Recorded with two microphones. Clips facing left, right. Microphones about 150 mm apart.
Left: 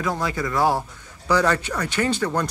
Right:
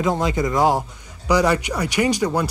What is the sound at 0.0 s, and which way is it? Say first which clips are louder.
Speech: right 5 dB; 20° right (ahead or behind).